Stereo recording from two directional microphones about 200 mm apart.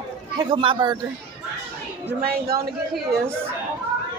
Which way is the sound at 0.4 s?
25° right (ahead or behind).